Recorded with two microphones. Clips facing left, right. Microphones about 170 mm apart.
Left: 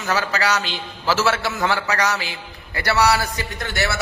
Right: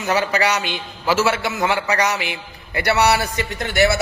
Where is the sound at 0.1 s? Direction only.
20° right (ahead or behind).